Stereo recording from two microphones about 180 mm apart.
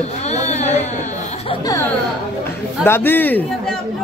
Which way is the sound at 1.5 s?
20° left (ahead or behind).